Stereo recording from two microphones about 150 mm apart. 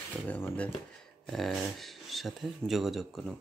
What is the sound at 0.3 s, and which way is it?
Speech, 10° left (ahead or behind).